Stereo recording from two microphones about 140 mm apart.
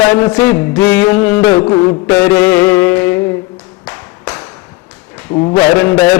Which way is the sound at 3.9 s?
15° left (ahead or behind).